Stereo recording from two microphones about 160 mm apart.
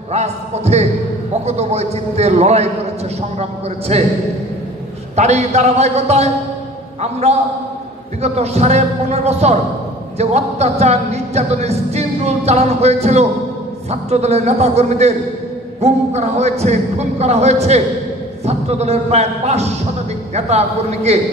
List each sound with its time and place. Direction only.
0.1 s a man's voice: 45° right (ahead or behind)
5.1 s a man's voice: 45° right (ahead or behind)